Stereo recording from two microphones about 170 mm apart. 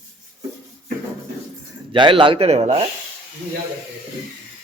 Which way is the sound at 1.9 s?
30° right (ahead or behind).